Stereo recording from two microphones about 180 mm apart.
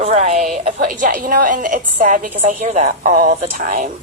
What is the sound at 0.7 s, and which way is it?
A woman's voice, 50° right (ahead or behind).